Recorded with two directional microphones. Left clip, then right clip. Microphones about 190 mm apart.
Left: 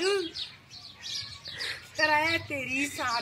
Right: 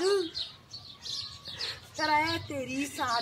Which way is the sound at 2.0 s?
Centre (ahead or behind).